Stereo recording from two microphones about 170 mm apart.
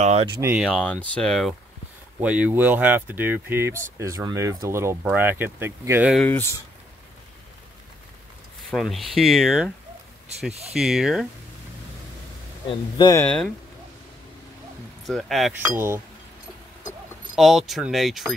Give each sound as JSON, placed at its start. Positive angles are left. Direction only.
{"t": 0.0, "sound": "speech", "side_deg": -40}
{"t": 0.3, "sound": "speech", "side_deg": -15}
{"t": 0.6, "sound": "speech", "side_deg": 5}
{"t": 2.1, "sound": "speech", "side_deg": -10}
{"t": 6.1, "sound": "speech", "side_deg": 10}
{"t": 8.6, "sound": "speech", "side_deg": 0}
{"t": 10.7, "sound": "speech", "side_deg": 0}
{"t": 12.9, "sound": "speech", "side_deg": 25}
{"t": 13.2, "sound": "speech", "side_deg": 5}
{"t": 15.0, "sound": "speech", "side_deg": 0}
{"t": 17.4, "sound": "speech", "side_deg": 0}